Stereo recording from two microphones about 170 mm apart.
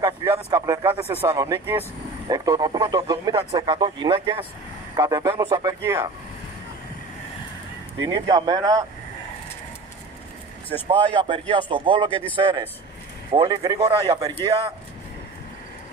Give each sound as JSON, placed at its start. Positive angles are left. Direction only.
{"t": 0.0, "sound": "speech", "side_deg": -20}
{"t": 8.0, "sound": "speech", "side_deg": -25}
{"t": 10.9, "sound": "speech", "side_deg": -30}